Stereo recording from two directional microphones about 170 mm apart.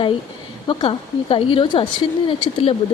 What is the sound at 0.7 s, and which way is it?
A woman's voice, 30° left (ahead or behind).